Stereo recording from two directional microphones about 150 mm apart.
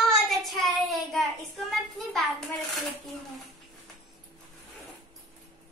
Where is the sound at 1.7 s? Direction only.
Centre (ahead or behind).